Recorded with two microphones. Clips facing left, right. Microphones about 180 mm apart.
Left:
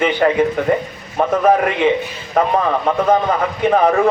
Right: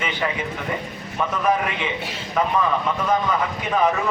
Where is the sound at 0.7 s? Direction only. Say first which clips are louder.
Left 10 dB; 45° left (ahead or behind).